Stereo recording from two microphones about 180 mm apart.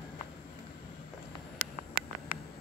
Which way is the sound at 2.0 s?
55° right (ahead or behind).